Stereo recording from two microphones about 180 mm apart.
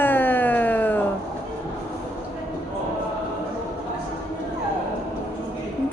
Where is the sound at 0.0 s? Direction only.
10° left (ahead or behind).